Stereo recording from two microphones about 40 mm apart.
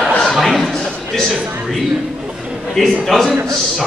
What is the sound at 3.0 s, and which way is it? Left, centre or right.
Speech, centre.